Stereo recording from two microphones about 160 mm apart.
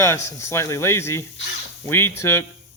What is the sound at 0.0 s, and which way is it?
Speech, 15° left (ahead or behind).